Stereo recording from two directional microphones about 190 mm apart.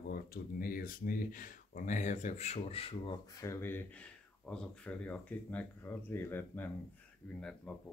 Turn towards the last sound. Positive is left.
turn(degrees=5)  # may be behind; listen again after turning